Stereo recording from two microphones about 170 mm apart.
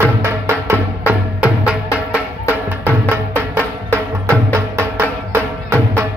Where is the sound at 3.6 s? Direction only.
10° left (ahead or behind).